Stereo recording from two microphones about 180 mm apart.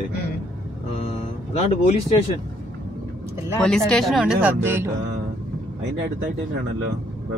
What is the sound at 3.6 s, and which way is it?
Speech, 5° left (ahead or behind).